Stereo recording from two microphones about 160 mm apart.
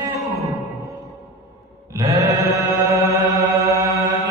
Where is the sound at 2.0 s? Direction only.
20° right (ahead or behind).